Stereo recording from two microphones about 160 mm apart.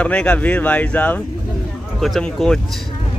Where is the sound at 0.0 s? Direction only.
5° left (ahead or behind).